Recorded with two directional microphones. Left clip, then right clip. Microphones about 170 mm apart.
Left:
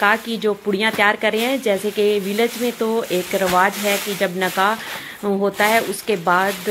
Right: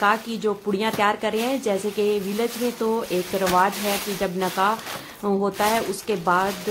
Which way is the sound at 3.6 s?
10° left (ahead or behind).